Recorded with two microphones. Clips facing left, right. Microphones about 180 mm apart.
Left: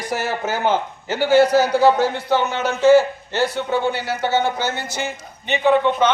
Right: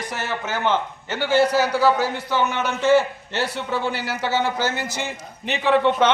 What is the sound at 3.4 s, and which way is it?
A man's voice, 90° right.